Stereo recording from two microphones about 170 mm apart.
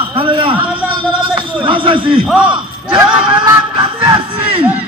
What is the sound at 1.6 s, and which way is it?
Speech, 30° right (ahead or behind).